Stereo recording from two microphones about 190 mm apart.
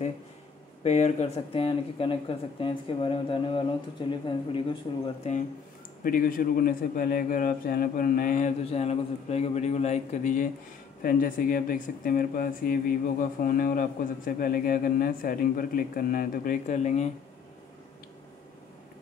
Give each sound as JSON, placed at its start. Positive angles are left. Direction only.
{"t": 0.8, "sound": "speech", "side_deg": 35}
{"t": 5.0, "sound": "speech", "side_deg": 35}
{"t": 6.0, "sound": "speech", "side_deg": 50}